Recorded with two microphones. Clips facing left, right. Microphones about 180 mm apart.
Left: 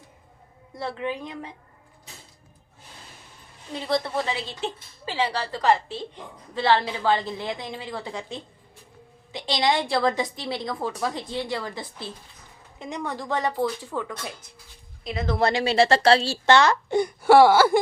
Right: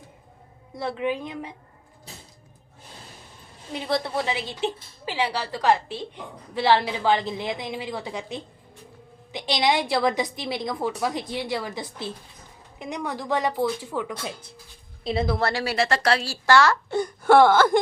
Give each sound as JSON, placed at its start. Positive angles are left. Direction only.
{"t": 0.9, "sound": "a woman's voice", "side_deg": -10}
{"t": 3.8, "sound": "a woman's voice", "side_deg": -10}
{"t": 13.1, "sound": "a woman's voice", "side_deg": -5}
{"t": 15.0, "sound": "a woman's voice", "side_deg": -30}
{"t": 15.4, "sound": "a woman's voice", "side_deg": 20}